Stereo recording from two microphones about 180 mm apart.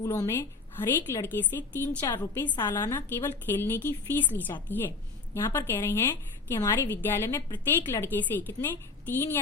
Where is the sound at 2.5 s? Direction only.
10° left (ahead or behind).